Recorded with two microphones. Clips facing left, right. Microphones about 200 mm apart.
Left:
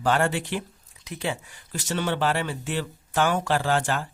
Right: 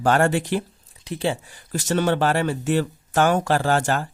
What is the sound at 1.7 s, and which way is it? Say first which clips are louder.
Speech: right 6 dB; 45° right (ahead or behind).